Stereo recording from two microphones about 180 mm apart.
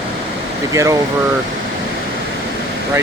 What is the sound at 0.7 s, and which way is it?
Speech, 20° right (ahead or behind).